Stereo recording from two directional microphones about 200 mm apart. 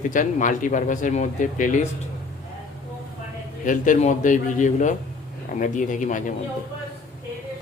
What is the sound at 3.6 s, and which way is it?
Speech, 40° left (ahead or behind).